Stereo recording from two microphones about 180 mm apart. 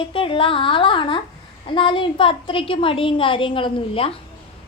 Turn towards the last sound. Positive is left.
turn(degrees=30)  # may be behind; listen again after turning